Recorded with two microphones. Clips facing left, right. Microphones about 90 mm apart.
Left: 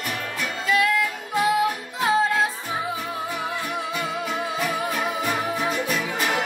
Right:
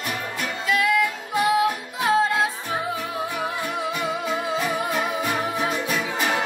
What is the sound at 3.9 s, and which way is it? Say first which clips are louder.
Music: right 1 dB; 5° right (ahead or behind).